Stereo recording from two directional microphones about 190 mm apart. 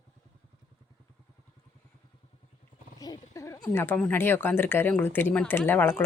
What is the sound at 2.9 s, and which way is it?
Speech, 20° left (ahead or behind).